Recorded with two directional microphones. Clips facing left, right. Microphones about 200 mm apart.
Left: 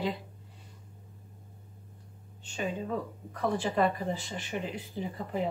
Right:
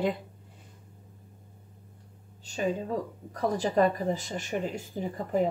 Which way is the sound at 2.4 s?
40° right (ahead or behind).